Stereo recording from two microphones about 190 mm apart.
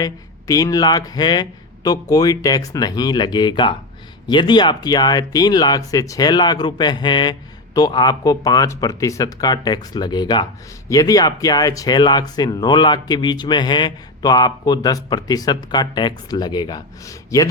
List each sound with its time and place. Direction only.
0.0 s speech: 20° left (ahead or behind)